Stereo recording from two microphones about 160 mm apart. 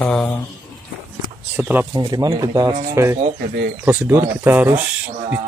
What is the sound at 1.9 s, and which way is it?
Speech, 25° right (ahead or behind).